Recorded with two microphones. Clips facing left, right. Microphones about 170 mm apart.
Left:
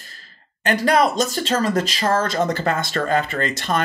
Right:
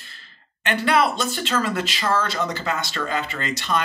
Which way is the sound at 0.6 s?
40° left (ahead or behind).